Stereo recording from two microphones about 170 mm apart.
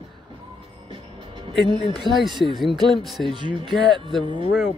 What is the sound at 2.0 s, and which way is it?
Speech, 25° left (ahead or behind).